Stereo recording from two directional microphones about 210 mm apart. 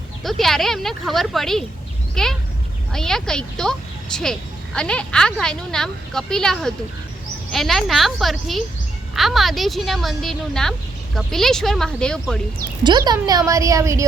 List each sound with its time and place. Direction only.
0.2 s speech: centre (ahead or behind)
12.8 s a woman's voice: 20° right (ahead or behind)